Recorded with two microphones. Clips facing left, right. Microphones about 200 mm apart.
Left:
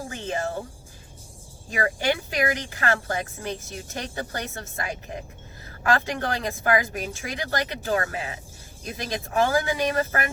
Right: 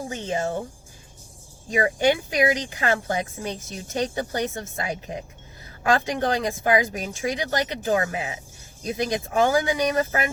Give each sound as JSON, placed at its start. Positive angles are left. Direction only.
{"t": 0.1, "sound": "speech", "side_deg": -20}
{"t": 1.7, "sound": "speech", "side_deg": -20}